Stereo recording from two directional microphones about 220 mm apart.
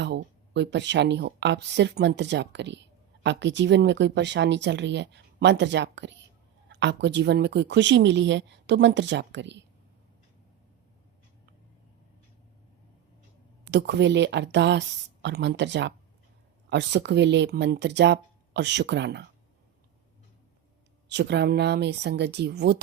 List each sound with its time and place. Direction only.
0.0 s speech: 50° right (ahead or behind)
13.7 s speech: 50° right (ahead or behind)
21.1 s speech: 50° right (ahead or behind)